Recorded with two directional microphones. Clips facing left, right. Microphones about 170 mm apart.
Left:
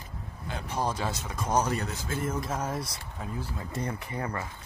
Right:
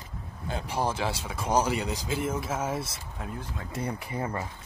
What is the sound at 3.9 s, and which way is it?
Speech, 20° right (ahead or behind).